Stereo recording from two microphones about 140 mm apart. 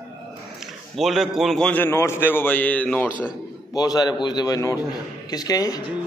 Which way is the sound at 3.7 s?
25° left (ahead or behind).